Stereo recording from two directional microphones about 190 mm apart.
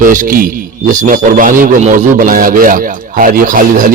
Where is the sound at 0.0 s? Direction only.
45° right (ahead or behind).